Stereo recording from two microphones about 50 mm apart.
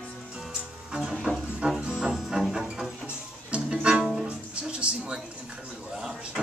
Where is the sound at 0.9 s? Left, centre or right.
Centre.